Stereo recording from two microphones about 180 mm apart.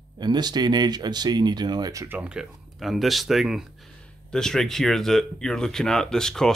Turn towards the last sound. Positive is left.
turn(degrees=5)  # may be behind; listen again after turning